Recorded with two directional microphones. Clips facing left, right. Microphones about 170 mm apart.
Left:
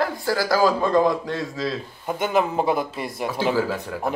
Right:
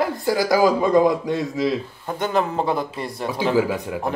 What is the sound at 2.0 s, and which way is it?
Speech, 10° left (ahead or behind).